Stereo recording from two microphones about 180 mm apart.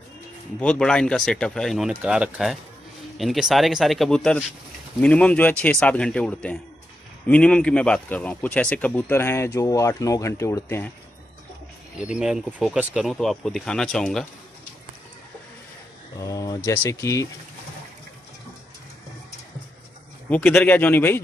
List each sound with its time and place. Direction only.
0.6 s speech: 5° left (ahead or behind)
12.0 s speech: 5° right (ahead or behind)
16.2 s speech: 20° left (ahead or behind)
20.2 s speech: 10° left (ahead or behind)